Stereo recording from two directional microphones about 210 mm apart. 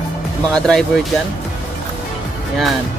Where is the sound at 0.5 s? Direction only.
Centre (ahead or behind).